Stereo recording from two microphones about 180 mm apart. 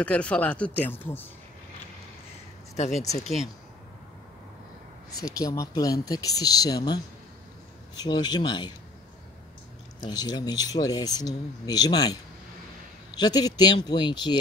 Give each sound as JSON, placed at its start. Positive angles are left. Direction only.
{"t": 0.0, "sound": "speech", "side_deg": 5}
{"t": 5.1, "sound": "speech", "side_deg": 20}
{"t": 8.0, "sound": "speech", "side_deg": 25}
{"t": 9.9, "sound": "speech", "side_deg": 20}